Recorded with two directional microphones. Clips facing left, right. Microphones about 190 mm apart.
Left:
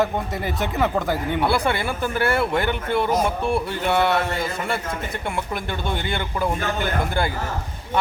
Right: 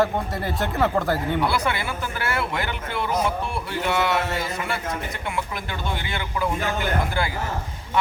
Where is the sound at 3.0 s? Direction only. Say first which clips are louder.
Even; 55° left (ahead or behind).